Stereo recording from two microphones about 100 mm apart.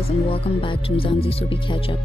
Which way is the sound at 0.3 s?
65° left (ahead or behind).